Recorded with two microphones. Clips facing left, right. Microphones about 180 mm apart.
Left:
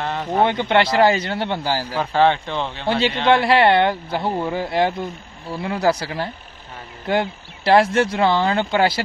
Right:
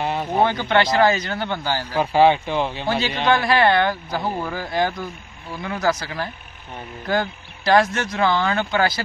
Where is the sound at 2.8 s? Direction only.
30° left (ahead or behind).